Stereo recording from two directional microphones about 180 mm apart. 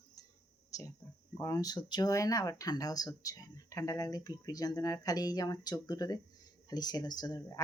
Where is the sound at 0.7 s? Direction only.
20° left (ahead or behind).